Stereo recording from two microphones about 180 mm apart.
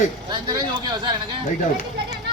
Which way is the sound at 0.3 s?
25° right (ahead or behind).